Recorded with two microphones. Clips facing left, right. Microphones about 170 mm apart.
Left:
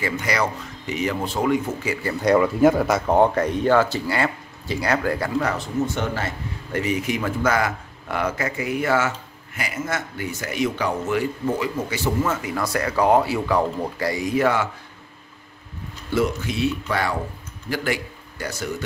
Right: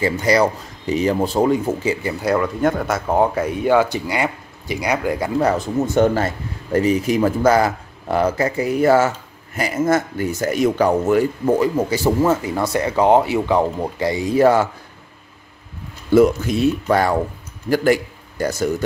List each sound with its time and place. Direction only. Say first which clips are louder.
0.0 s speech: right 7 dB; 35° right (ahead or behind)
2.2 s speech: left 2 dB; centre (ahead or behind); by 5.3 s 15° right (ahead or behind)
5.4 s speech: right 5 dB; 40° right (ahead or behind)
16.1 s a man's voice: right 9 dB; 45° right (ahead or behind)